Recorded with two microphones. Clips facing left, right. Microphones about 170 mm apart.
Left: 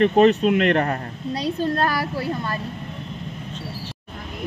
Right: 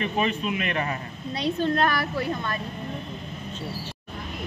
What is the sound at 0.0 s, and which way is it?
Speech, 70° left (ahead or behind).